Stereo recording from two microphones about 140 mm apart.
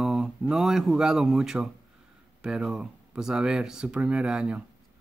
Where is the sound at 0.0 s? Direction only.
5° right (ahead or behind).